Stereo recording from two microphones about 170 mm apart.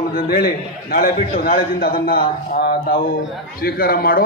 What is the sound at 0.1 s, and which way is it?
A man's voice, 60° left (ahead or behind).